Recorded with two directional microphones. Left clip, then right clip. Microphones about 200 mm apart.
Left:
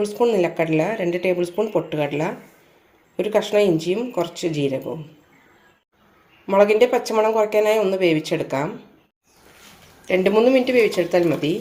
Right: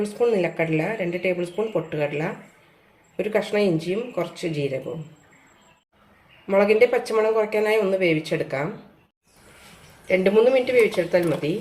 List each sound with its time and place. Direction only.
0.0 s speech: 25° left (ahead or behind)
6.5 s speech: 25° left (ahead or behind)
10.1 s speech: 30° left (ahead or behind)